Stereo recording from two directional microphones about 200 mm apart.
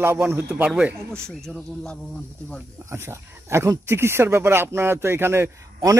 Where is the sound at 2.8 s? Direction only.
15° right (ahead or behind).